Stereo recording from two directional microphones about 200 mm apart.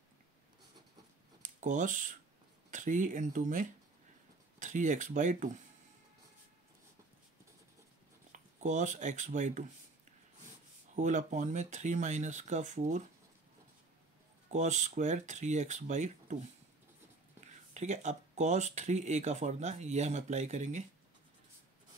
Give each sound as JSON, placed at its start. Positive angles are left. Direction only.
{"t": 1.4, "sound": "speech", "side_deg": -40}
{"t": 8.3, "sound": "speech", "side_deg": -35}
{"t": 11.0, "sound": "speech", "side_deg": -35}
{"t": 14.5, "sound": "speech", "side_deg": -35}
{"t": 17.4, "sound": "speech", "side_deg": -35}